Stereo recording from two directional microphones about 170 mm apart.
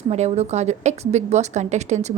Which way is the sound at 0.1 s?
40° right (ahead or behind).